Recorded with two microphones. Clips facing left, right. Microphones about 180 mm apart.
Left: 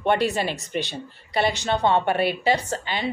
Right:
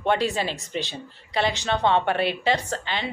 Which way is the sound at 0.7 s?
60° left (ahead or behind).